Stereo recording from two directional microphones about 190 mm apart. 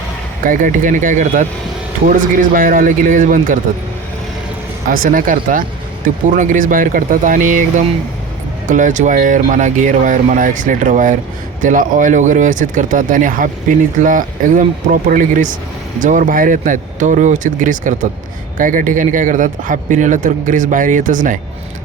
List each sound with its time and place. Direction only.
0.4 s speech: 45° right (ahead or behind)
4.9 s speech: 45° right (ahead or behind)
8.6 s speech: 40° right (ahead or behind)